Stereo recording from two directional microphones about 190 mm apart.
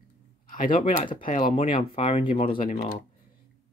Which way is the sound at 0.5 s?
45° left (ahead or behind).